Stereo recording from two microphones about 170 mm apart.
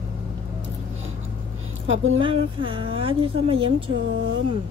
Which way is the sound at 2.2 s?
30° right (ahead or behind).